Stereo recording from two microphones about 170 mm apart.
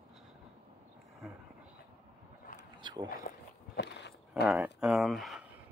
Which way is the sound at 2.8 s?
25° right (ahead or behind).